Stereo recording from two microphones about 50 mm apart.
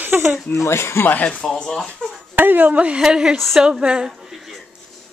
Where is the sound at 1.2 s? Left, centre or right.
Left.